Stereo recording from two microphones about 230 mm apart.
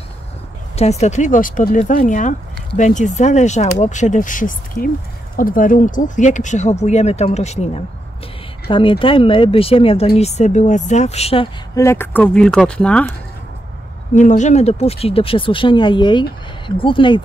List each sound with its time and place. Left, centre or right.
0.7 s speech: left
11.7 s speech: centre
14.1 s speech: left